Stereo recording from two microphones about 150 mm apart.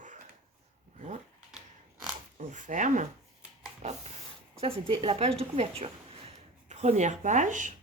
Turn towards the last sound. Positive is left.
turn(degrees=-55)  # may be behind; listen again after turning